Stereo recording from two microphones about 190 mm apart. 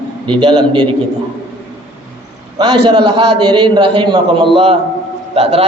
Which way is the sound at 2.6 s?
25° right (ahead or behind).